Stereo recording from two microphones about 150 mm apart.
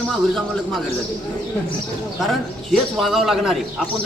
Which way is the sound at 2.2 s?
Centre (ahead or behind).